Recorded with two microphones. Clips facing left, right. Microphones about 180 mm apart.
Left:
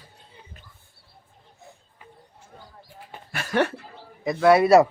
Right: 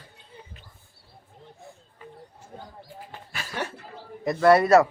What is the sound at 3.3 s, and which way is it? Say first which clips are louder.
Speech: left 10 dB; 65° left (ahead or behind).